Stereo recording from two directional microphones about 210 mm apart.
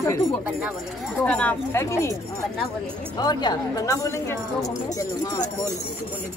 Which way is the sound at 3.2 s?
20° left (ahead or behind).